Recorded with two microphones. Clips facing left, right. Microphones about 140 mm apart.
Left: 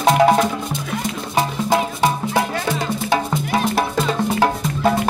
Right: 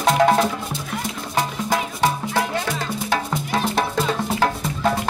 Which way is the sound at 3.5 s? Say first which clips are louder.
Left 2 dB; 10° left (ahead or behind).